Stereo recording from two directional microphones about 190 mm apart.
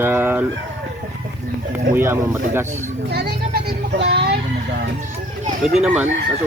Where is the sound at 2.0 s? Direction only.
15° right (ahead or behind).